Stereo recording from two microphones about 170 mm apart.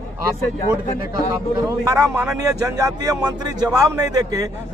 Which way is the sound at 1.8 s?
15° right (ahead or behind).